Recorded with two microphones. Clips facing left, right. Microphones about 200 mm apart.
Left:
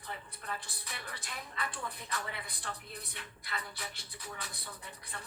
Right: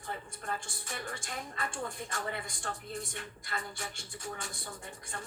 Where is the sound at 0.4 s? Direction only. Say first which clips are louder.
Right 4 dB; 45° right (ahead or behind).